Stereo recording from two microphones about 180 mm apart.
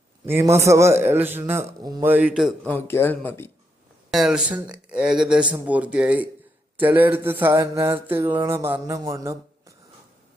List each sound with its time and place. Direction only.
0.3 s a man's voice: 15° right (ahead or behind)
2.6 s speech: 10° left (ahead or behind)
4.1 s a man's voice: centre (ahead or behind); by 9.7 s 20° right (ahead or behind)